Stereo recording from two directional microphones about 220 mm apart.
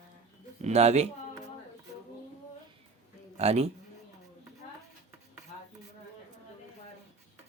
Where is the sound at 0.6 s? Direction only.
30° right (ahead or behind).